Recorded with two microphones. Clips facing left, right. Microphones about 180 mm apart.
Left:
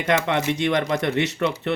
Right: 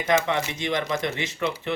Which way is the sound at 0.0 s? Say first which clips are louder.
Left 2 dB; 70° left (ahead or behind).